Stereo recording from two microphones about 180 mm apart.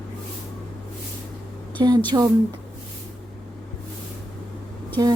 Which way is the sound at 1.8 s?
25° right (ahead or behind).